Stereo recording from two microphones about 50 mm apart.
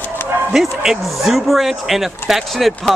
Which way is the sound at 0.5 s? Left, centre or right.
Centre.